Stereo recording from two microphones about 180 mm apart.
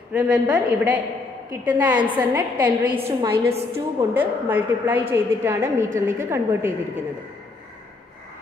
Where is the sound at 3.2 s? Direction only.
15° right (ahead or behind).